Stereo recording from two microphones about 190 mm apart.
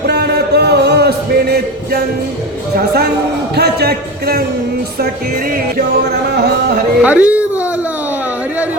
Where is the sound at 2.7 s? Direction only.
60° right (ahead or behind).